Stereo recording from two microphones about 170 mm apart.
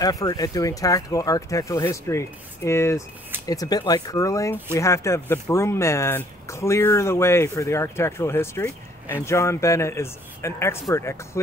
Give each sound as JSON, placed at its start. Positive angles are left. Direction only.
{"t": 0.0, "sound": "speech", "side_deg": 20}